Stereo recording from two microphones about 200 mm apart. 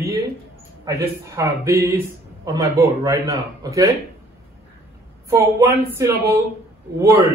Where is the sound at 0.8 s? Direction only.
15° right (ahead or behind).